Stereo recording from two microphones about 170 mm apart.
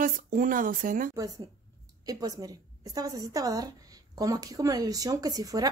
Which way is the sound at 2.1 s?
20° right (ahead or behind).